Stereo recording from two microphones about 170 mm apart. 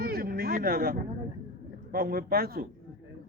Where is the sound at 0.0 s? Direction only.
60° right (ahead or behind).